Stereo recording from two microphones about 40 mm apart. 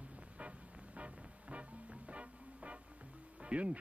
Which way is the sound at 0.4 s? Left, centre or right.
Right.